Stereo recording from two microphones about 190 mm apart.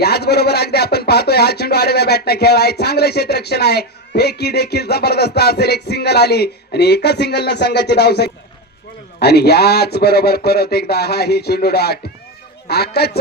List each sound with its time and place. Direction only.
0.0 s a man's voice: 60° left (ahead or behind)